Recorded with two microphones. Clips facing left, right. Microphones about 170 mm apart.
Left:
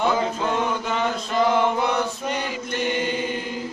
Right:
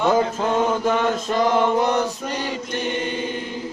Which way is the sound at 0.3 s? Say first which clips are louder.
Right 4 dB; 45° right (ahead or behind).